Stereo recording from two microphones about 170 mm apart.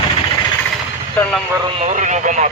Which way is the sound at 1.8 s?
45° right (ahead or behind).